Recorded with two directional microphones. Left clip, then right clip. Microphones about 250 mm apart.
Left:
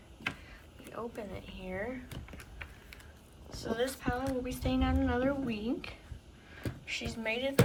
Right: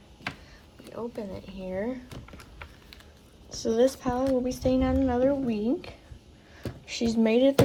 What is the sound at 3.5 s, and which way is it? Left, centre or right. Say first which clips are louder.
A woman's voice: right 11 dB; right.